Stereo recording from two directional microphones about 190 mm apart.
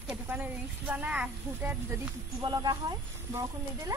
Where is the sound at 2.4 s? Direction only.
20° right (ahead or behind).